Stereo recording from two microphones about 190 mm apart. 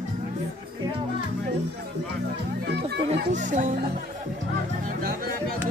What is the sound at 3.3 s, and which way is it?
Speech, 40° right (ahead or behind).